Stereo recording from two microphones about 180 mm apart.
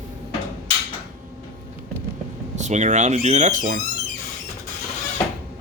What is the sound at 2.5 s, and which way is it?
Speech, 40° right (ahead or behind).